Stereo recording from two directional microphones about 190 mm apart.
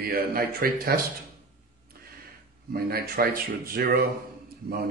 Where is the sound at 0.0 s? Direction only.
50° right (ahead or behind).